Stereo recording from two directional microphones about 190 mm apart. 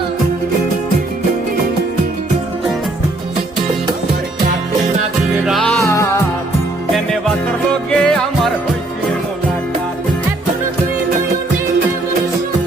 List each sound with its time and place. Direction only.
5.5 s music: centre (ahead or behind)
5.8 s music: 15° left (ahead or behind)
7.9 s music: 5° left (ahead or behind)